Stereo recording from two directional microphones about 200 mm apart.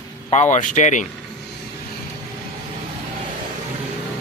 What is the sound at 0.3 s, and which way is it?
Speech, 35° left (ahead or behind).